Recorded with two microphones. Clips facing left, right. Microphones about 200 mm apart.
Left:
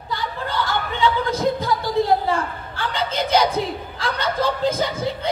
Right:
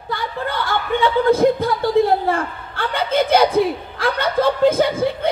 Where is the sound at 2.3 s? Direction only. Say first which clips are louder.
Right 1 dB; 55° right (ahead or behind).